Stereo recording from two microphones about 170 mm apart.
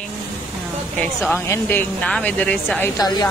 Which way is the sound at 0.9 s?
10° left (ahead or behind).